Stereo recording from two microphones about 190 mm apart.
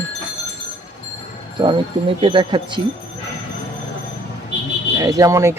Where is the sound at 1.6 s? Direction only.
25° right (ahead or behind).